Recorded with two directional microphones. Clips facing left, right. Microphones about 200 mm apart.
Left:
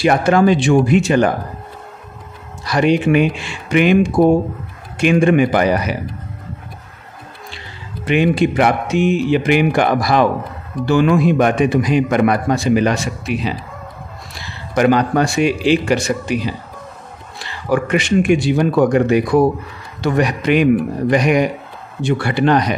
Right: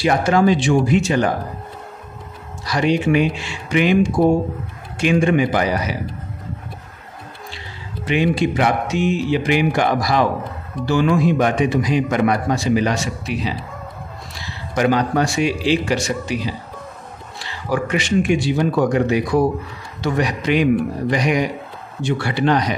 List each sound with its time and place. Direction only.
0.0 s a man's voice: 60° left (ahead or behind)
2.6 s a man's voice: 55° left (ahead or behind)
8.0 s a man's voice: 55° left (ahead or behind)
14.8 s a man's voice: 55° left (ahead or behind)